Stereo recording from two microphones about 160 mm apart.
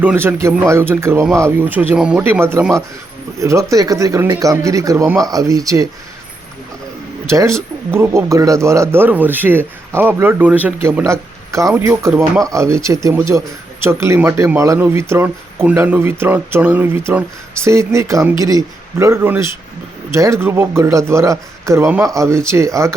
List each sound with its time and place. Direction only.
0.0 s speech: 10° right (ahead or behind)
7.3 s speech: 15° right (ahead or behind)